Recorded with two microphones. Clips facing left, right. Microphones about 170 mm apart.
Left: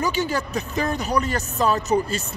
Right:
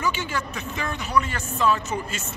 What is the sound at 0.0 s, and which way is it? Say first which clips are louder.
A woman's voice: left 4 dB; 40° left (ahead or behind).